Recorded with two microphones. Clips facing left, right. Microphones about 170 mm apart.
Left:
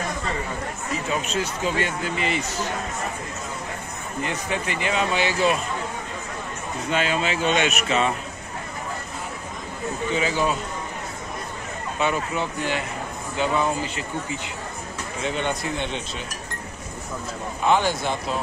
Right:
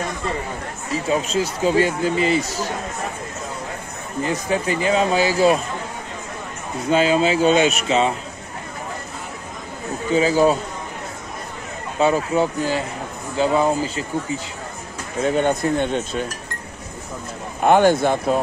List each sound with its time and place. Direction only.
1.1 s speech: 30° right (ahead or behind)
4.2 s speech: 35° right (ahead or behind)
6.9 s speech: 35° right (ahead or behind)
10.1 s speech: 35° right (ahead or behind)
12.0 s speech: 35° right (ahead or behind)
15.2 s cutlery: 45° right (ahead or behind)
17.6 s cutlery: 50° right (ahead or behind)